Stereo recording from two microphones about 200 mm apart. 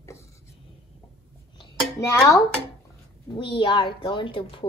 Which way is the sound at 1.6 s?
15° left (ahead or behind).